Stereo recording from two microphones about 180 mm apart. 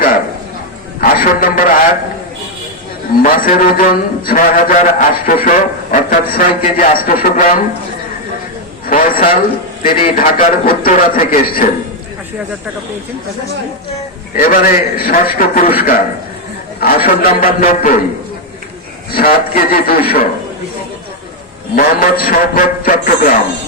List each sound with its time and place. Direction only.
1.0 s a man's voice: 50° left (ahead or behind)
3.2 s a man's voice: 50° left (ahead or behind)
8.9 s a man's voice: 50° left (ahead or behind)
14.3 s a man's voice: 50° left (ahead or behind)
16.8 s a man's voice: 55° left (ahead or behind)
19.1 s a man's voice: 55° left (ahead or behind)
21.8 s a man's voice: 55° left (ahead or behind)